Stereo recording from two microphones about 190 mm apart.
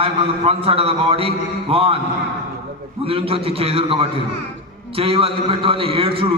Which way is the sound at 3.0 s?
30° right (ahead or behind).